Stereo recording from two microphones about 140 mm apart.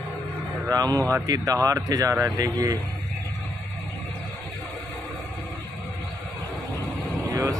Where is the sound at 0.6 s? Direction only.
25° right (ahead or behind).